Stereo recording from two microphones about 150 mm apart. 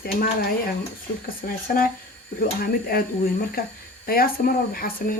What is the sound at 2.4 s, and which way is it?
Speech, 80° left.